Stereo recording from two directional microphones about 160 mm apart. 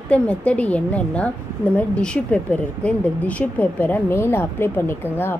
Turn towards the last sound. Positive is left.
turn(degrees=15)  # may be behind; listen again after turning